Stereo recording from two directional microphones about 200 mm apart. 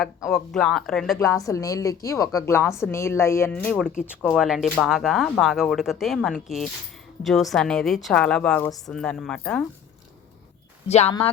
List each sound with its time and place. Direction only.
0.0 s speech: centre (ahead or behind)
1.2 s a woman's voice: 15° left (ahead or behind)
10.8 s speech: 35° left (ahead or behind)